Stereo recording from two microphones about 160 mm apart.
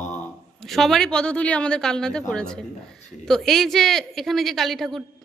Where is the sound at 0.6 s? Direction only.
Centre (ahead or behind).